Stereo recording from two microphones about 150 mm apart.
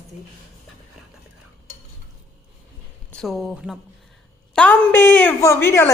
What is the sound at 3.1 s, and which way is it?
Speech, centre (ahead or behind).